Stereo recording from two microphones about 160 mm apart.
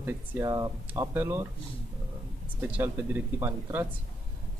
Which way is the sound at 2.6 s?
10° right (ahead or behind).